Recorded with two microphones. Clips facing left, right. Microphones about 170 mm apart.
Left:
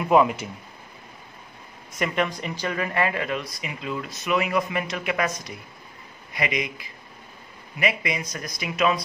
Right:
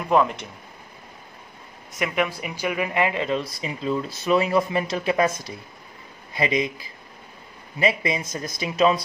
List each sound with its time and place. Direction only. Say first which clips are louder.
0.1 s speech: left 1 dB; 5° left (ahead or behind)
1.9 s speech: right 1 dB; centre (ahead or behind); by 9.0 s 30° right (ahead or behind)